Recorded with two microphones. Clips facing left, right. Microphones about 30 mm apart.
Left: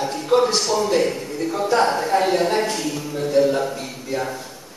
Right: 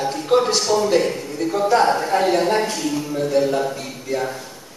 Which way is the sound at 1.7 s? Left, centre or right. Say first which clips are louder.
Right 1 dB; centre.